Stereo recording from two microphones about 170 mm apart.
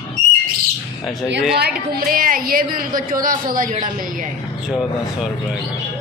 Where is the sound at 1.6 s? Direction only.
65° right (ahead or behind).